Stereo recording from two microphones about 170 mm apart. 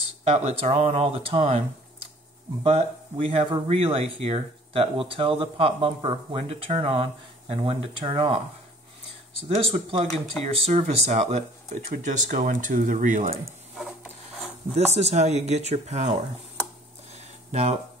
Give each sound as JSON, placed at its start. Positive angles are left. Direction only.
{"t": 0.2, "sound": "speech", "side_deg": -40}
{"t": 2.6, "sound": "speech", "side_deg": -40}
{"t": 9.5, "sound": "speech", "side_deg": -35}
{"t": 11.9, "sound": "speech", "side_deg": -50}
{"t": 14.7, "sound": "speech", "side_deg": -40}
{"t": 17.5, "sound": "speech", "side_deg": -40}